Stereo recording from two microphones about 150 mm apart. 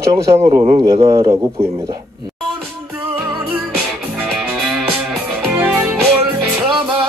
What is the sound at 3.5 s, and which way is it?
Music, 10° right (ahead or behind).